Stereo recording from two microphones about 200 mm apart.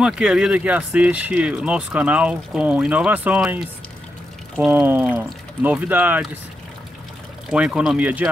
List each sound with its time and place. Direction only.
0.0 s speech: 5° right (ahead or behind)
4.6 s speech: 10° right (ahead or behind)
7.4 s speech: 5° right (ahead or behind)